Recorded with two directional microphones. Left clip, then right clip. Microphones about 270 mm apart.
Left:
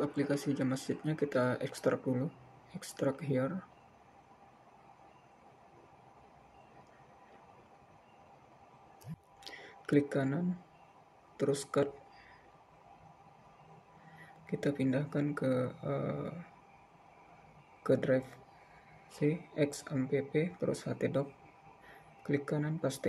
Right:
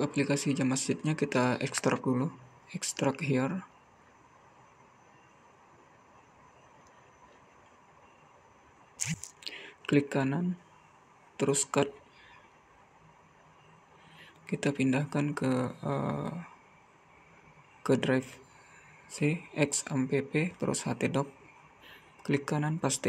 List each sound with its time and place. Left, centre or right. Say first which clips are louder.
0.0 s speech: right 4 dB; centre
9.4 s a sound: right 6 dB; centre
11.3 s speech: right 3 dB; centre
14.4 s speech: right 3 dB; centre
17.8 s speech: right 2 dB; centre